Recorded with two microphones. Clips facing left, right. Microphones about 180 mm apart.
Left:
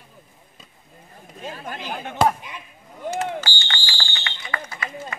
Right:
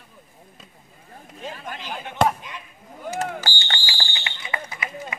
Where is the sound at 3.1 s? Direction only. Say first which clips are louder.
Left 1 dB; 40° right (ahead or behind).